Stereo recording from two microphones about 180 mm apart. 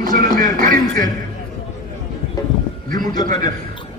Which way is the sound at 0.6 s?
50° right (ahead or behind).